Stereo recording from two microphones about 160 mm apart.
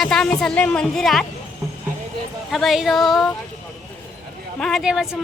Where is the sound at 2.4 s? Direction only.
Centre (ahead or behind).